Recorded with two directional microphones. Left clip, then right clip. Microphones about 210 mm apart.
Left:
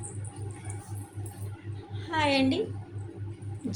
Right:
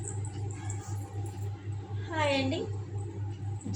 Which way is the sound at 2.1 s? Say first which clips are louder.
Left 3 dB; 55° left (ahead or behind).